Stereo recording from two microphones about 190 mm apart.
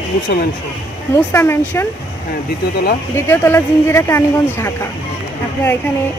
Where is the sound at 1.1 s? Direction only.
15° left (ahead or behind).